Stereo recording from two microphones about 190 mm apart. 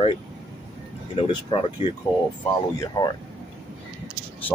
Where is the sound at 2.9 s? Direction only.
20° left (ahead or behind).